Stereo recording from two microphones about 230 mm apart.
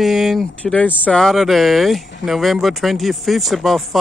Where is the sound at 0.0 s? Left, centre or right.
Centre.